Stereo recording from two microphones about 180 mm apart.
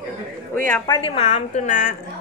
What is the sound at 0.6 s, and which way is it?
Speech, 10° left (ahead or behind).